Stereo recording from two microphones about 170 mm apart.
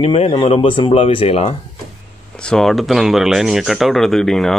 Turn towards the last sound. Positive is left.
turn(degrees=0)  # may be behind; listen again after turning